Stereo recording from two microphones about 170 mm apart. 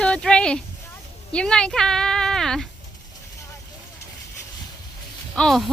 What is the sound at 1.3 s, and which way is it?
A woman's voice, 5° left (ahead or behind).